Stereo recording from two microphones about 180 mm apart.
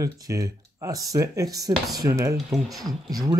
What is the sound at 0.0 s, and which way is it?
Speech, 20° right (ahead or behind).